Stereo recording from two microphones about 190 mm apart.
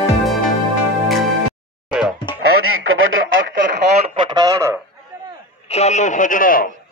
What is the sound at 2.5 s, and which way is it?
Radio, 90° right.